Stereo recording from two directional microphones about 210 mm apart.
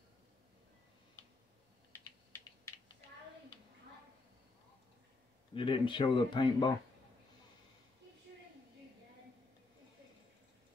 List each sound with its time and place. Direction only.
1.9 s typing: 10° left (ahead or behind)
5.5 s speech: 25° left (ahead or behind)